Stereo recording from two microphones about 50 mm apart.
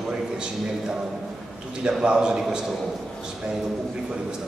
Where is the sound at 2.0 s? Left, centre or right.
Centre.